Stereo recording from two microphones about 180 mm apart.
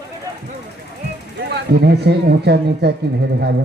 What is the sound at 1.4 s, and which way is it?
Speech, 65° right (ahead or behind).